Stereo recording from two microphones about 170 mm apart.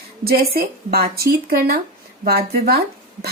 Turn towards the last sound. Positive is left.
turn(degrees=-65)  # may be behind; listen again after turning